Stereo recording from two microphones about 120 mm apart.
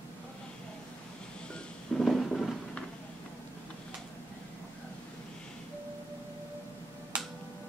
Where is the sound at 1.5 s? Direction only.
Centre (ahead or behind).